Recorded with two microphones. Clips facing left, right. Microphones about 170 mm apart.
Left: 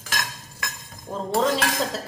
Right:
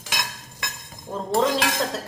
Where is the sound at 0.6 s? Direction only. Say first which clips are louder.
Left 1 dB; centre (ahead or behind).